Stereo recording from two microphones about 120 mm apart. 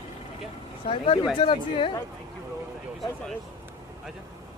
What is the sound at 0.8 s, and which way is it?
Speech, 50° left (ahead or behind).